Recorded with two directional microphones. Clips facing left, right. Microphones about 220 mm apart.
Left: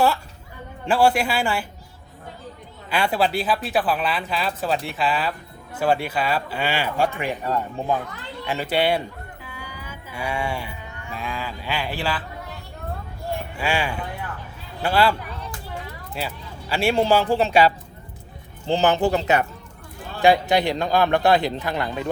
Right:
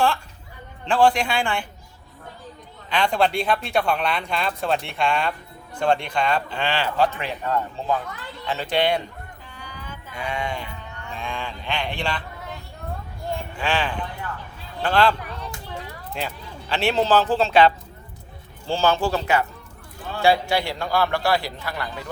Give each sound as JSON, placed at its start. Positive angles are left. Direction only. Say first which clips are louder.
{"t": 0.9, "sound": "speech", "louder": "even", "side_deg": 10}
{"t": 2.9, "sound": "speech", "louder": "even", "side_deg": 5}
{"t": 9.4, "sound": "a sound", "louder": "left 2 dB", "side_deg": 5}
{"t": 13.6, "sound": "speech", "louder": "even", "side_deg": 10}
{"t": 16.1, "sound": "a man's voice", "louder": "even", "side_deg": 10}